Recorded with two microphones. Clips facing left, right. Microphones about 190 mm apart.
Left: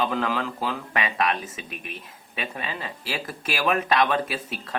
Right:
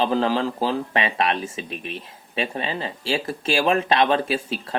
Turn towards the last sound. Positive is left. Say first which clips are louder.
# right 5 dB
turn(degrees=-30)  # may be behind; listen again after turning